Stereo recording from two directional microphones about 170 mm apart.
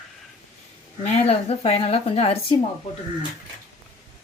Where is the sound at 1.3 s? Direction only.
40° left (ahead or behind).